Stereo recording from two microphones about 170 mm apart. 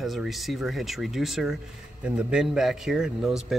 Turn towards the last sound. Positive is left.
turn(degrees=0)  # may be behind; listen again after turning